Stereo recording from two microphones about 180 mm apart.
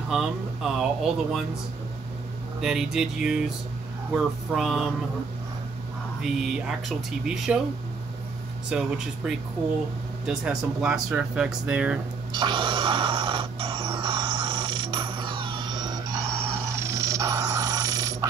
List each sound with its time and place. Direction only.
0.1 s speech: 5° right (ahead or behind)
2.6 s speech: 5° right (ahead or behind)
6.2 s speech: 5° right (ahead or behind)
8.6 s speech: 5° right (ahead or behind)
12.3 s a sound: 25° right (ahead or behind)
16.7 s dog: 15° right (ahead or behind)